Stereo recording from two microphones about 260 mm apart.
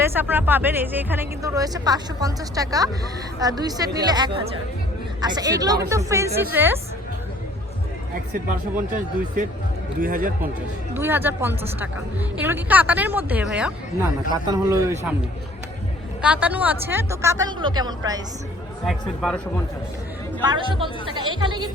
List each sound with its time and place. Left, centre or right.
0.0 s speech: centre
8.9 s speech: right
10.9 s speech: centre
16.2 s speech: centre
18.9 s a man's voice: centre
20.4 s speech: centre